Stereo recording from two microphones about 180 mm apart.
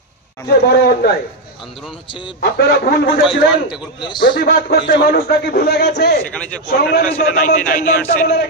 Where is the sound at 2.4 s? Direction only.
60° left (ahead or behind).